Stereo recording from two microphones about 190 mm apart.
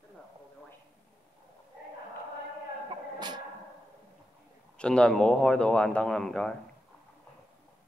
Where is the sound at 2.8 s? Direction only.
20° right (ahead or behind).